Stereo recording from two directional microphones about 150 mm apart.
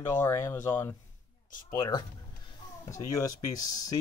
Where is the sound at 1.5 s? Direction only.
65° left (ahead or behind).